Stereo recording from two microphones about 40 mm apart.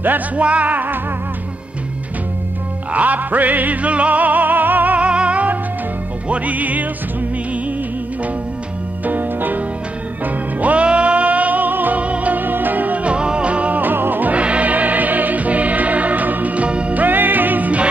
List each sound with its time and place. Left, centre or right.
0.4 s music: right
2.9 s music: right
4.9 s music: right
9.0 s piano: right
10.2 s music: right
12.0 s music: right
13.0 s music: right
13.7 s music: right
14.3 s music: right
17.0 s music: right